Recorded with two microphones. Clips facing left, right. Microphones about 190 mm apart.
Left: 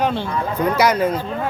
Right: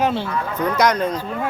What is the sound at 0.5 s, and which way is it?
Speech, 5° left (ahead or behind).